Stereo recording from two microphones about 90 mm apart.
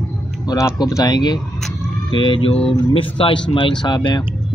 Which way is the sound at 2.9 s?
90° left.